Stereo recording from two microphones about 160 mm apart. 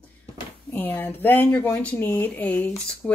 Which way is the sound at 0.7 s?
10° left (ahead or behind).